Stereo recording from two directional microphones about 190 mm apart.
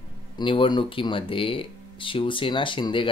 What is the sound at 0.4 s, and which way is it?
Speech, 25° left (ahead or behind).